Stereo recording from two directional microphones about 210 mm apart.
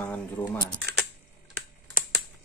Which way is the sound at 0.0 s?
5° left (ahead or behind).